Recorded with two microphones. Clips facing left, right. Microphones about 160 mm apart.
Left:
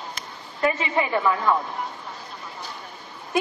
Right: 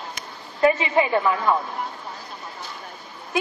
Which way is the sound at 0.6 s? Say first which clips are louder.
Right 4 dB; 25° right (ahead or behind).